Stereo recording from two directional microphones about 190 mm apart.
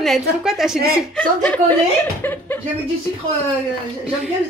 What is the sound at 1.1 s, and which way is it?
Speech, 5° left (ahead or behind).